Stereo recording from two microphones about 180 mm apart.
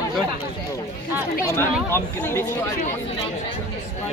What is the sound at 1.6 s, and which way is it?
Speech, 10° left (ahead or behind).